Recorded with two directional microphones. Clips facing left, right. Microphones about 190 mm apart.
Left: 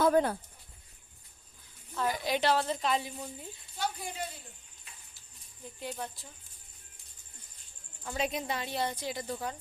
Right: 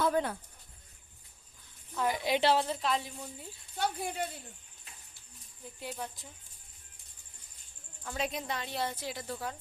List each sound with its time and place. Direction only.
0.0 s speech: 40° left (ahead or behind)
2.0 s a woman's voice: 20° right (ahead or behind)
2.6 s speech: centre (ahead or behind)
3.8 s speech: 60° right (ahead or behind)
5.8 s speech: 10° right (ahead or behind)
8.0 s speech: 5° left (ahead or behind)